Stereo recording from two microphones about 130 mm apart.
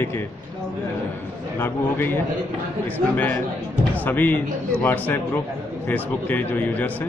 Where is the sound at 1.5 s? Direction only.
15° left (ahead or behind).